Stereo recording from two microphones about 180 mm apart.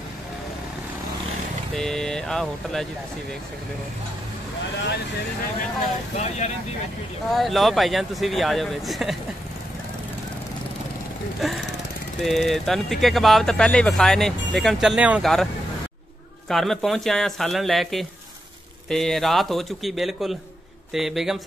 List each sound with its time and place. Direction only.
1.8 s speech: 5° left (ahead or behind)
6.1 s speech: 40° left (ahead or behind)
7.3 s speech: centre (ahead or behind)
11.4 s speech: centre (ahead or behind)
16.4 s speech: centre (ahead or behind)